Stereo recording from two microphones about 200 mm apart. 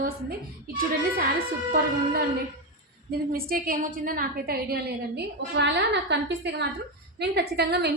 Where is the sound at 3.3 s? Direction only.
45° right (ahead or behind).